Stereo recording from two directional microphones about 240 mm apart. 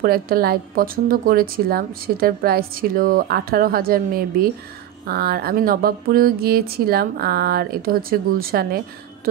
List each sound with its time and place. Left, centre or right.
0.0 s a woman's voice: right